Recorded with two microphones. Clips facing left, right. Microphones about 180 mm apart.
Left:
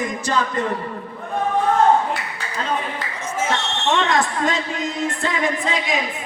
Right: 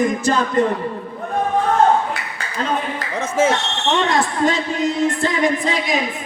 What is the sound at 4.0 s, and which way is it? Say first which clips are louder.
Music: right 5 dB; 35° right (ahead or behind).